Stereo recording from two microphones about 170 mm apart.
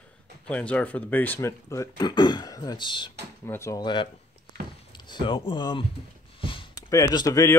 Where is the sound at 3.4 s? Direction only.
15° left (ahead or behind).